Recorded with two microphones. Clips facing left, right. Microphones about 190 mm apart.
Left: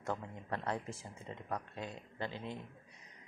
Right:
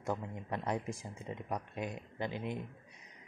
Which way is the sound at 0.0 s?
15° right (ahead or behind).